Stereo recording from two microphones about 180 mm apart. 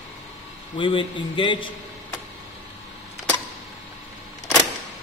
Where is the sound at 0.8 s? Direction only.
25° left (ahead or behind).